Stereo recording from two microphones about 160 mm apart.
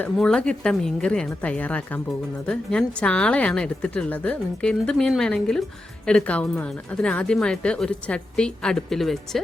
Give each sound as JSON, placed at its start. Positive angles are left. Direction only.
{"t": 0.0, "sound": "speech", "side_deg": 5}